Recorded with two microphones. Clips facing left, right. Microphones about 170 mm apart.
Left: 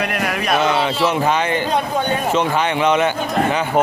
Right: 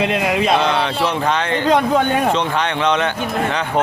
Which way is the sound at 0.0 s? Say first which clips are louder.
Right 4 dB; 20° right (ahead or behind).